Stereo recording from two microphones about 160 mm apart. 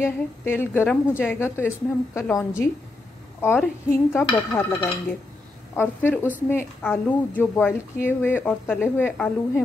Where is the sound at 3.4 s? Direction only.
10° left (ahead or behind).